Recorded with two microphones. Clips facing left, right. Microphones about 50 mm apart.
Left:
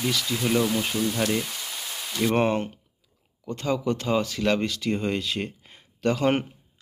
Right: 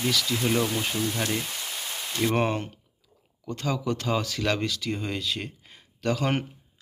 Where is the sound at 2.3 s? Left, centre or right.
Centre.